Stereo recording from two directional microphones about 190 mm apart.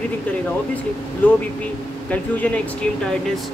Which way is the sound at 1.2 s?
10° left (ahead or behind).